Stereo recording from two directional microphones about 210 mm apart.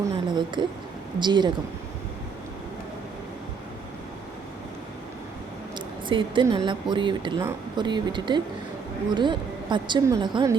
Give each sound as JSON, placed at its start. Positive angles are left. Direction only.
{"t": 0.1, "sound": "a woman's voice", "side_deg": -20}
{"t": 6.1, "sound": "speech", "side_deg": -25}